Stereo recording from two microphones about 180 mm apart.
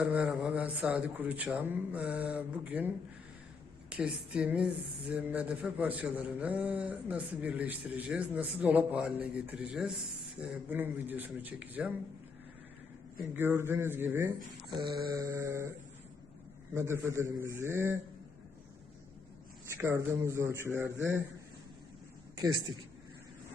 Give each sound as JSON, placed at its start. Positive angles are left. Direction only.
{"t": 0.0, "sound": "speech", "side_deg": -5}
{"t": 13.3, "sound": "speech", "side_deg": -10}
{"t": 14.7, "sound": "mantra", "side_deg": -25}
{"t": 15.1, "sound": "speech", "side_deg": -15}
{"t": 16.7, "sound": "speech", "side_deg": -15}
{"t": 19.6, "sound": "speech", "side_deg": -15}
{"t": 22.4, "sound": "a woman's voice", "side_deg": -20}